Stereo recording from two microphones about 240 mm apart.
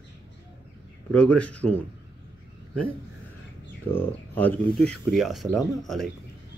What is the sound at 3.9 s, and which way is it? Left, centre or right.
Speech, centre.